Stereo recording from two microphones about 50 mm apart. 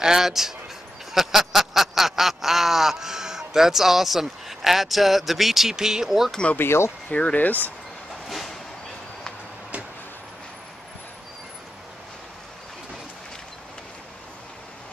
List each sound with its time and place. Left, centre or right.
0.0 s speech: centre
1.1 s a sound: centre
7.1 s speech: left
7.3 s speech: left
8.3 s bow-wow: centre